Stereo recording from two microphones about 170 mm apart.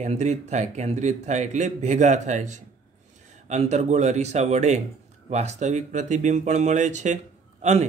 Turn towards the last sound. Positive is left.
turn(degrees=-40)  # may be behind; listen again after turning